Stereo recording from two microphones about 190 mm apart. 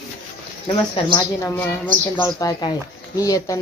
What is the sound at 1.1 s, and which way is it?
Speech, 15° left (ahead or behind).